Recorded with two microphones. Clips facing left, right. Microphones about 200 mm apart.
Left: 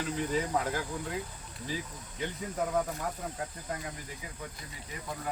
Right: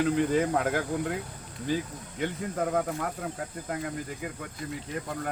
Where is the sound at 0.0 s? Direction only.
55° right (ahead or behind).